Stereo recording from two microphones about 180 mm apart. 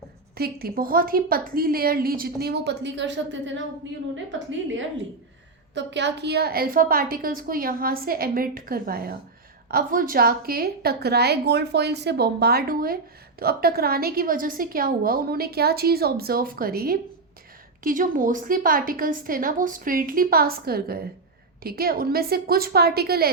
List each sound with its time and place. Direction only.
0.3 s a woman's voice: 55° right (ahead or behind); by 3.6 s 85° right
5.7 s a woman's voice: 75° right (ahead or behind); by 23.3 s 60° right (ahead or behind)